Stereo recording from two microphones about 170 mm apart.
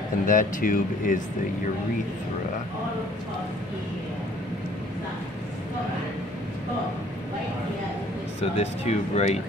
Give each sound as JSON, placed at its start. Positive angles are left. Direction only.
{"t": 0.3, "sound": "speech", "side_deg": 50}
{"t": 8.4, "sound": "speech", "side_deg": 40}